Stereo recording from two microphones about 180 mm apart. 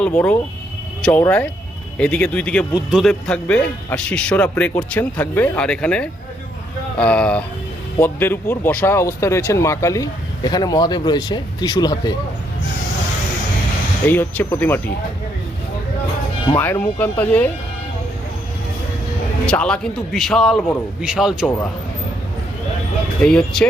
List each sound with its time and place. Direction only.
0.0 s speech: 10° left (ahead or behind)
2.0 s a man's voice: 5° left (ahead or behind); by 12.1 s 20° left (ahead or behind)
14.1 s speech: 10° left (ahead or behind)
16.5 s speech: 10° left (ahead or behind)
19.5 s a man's voice: 5° left (ahead or behind)
21.4 s speech: 10° left (ahead or behind)
23.2 s a man's voice: 5° left (ahead or behind)